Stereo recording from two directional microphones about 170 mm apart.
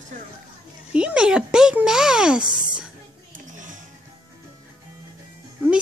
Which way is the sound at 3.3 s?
50° right (ahead or behind).